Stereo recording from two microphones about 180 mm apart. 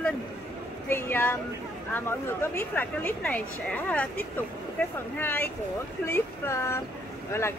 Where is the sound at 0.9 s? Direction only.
10° left (ahead or behind).